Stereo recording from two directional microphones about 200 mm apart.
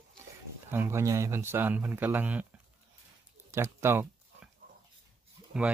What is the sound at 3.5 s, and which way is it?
Speech, 15° right (ahead or behind).